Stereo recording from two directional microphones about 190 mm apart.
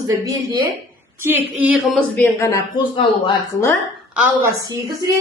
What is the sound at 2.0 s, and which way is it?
Speech, 10° left (ahead or behind).